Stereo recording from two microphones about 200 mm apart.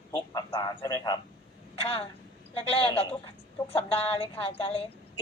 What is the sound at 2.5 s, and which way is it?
A man's voice, 30° left (ahead or behind).